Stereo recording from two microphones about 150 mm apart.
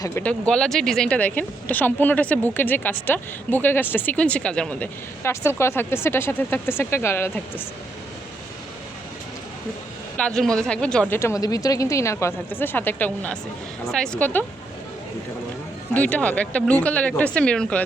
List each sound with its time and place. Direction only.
0.0 s speech: 15° left (ahead or behind)
10.2 s a woman's voice: 5° left (ahead or behind)
11.2 s a woman's voice: 20° left (ahead or behind)
16.0 s speech: 10° left (ahead or behind)